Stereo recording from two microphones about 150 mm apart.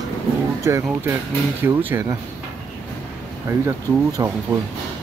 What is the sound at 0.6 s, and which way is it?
Speech, 15° right (ahead or behind).